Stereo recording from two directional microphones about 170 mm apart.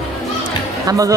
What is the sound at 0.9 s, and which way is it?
Speech, 20° right (ahead or behind).